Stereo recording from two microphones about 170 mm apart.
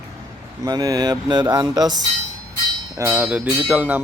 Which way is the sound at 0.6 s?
20° right (ahead or behind).